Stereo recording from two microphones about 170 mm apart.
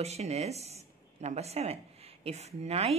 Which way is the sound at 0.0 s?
40° right (ahead or behind).